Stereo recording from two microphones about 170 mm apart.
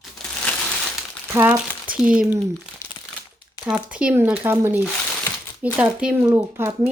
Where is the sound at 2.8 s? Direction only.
15° left (ahead or behind).